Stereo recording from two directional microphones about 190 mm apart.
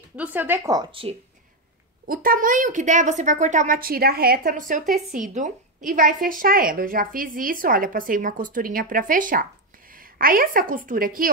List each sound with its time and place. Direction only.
0.1 s speech: 10° right (ahead or behind); by 1.1 s 25° right (ahead or behind)
2.0 s a woman's voice: 45° right (ahead or behind)